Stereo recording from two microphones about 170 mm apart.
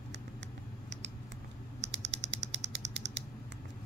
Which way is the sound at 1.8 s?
90° right.